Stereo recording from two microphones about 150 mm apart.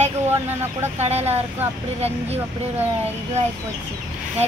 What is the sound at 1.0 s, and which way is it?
Speech, 45° right (ahead or behind).